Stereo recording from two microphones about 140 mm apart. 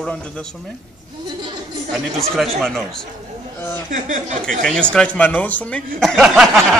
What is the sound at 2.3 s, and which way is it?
Speech, centre (ahead or behind).